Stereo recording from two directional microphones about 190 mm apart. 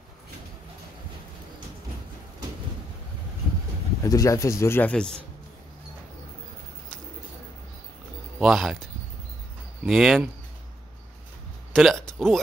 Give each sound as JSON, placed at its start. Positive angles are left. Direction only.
{"t": 4.0, "sound": "speech", "side_deg": 15}
{"t": 8.4, "sound": "speech", "side_deg": 0}
{"t": 9.8, "sound": "speech", "side_deg": 0}
{"t": 11.7, "sound": "speech", "side_deg": 0}